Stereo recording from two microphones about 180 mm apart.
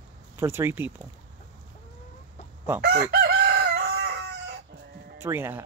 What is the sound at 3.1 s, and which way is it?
Chicken, 65° right (ahead or behind).